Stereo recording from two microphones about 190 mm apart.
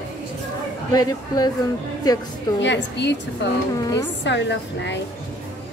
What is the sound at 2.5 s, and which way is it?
A woman's voice, 70° left (ahead or behind).